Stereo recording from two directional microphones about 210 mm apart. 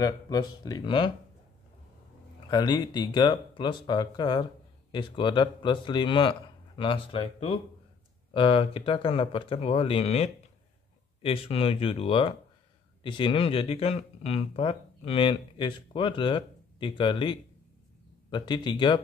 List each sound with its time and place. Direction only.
0.0 s speech: 20° left (ahead or behind)
2.5 s speech: 20° left (ahead or behind)